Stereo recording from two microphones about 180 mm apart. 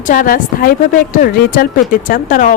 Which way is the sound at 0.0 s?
50° left (ahead or behind).